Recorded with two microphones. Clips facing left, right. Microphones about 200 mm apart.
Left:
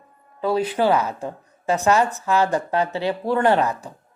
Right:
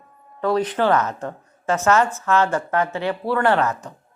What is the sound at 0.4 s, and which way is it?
A woman's voice, 10° left (ahead or behind).